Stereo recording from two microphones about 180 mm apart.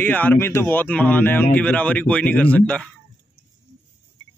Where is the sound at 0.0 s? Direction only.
10° left (ahead or behind).